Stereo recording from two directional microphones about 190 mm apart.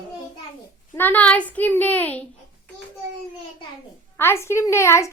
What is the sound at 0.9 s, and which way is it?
A woman's voice, 10° left (ahead or behind).